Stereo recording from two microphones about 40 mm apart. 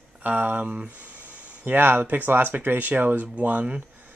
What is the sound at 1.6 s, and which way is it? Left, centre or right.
Speech, right.